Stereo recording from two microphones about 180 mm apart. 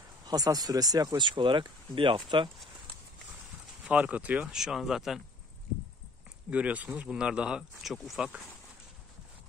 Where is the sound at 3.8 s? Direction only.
5° right (ahead or behind).